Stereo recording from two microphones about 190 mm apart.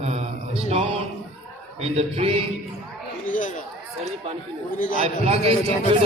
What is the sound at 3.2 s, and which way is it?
Chatter, 45° left (ahead or behind).